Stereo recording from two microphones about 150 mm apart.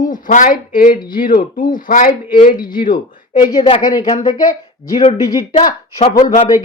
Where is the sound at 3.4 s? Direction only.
30° left (ahead or behind).